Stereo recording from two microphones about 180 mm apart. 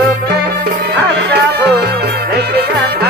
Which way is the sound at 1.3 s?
65° right (ahead or behind).